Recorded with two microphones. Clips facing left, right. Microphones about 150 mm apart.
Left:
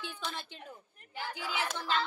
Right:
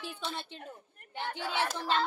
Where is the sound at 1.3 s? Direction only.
35° right (ahead or behind).